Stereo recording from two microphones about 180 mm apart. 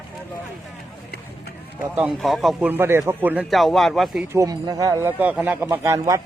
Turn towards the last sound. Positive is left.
turn(degrees=-15)  # may be behind; listen again after turning